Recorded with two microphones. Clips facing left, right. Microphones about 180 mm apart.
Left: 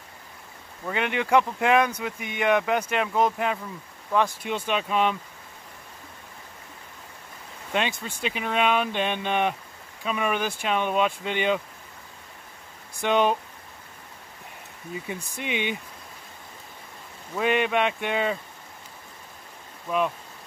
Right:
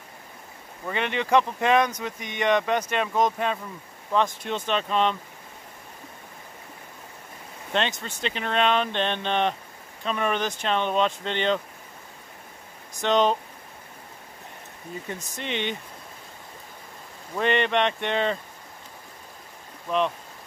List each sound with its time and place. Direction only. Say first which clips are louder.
0.8 s speech: left 1 dB; 10° left (ahead or behind)
7.7 s speech: even; 10° left (ahead or behind)
12.9 s speech: right 1 dB; 10° left (ahead or behind)
15.0 s speech: even; 10° left (ahead or behind)
17.4 s speech: even; 5° left (ahead or behind)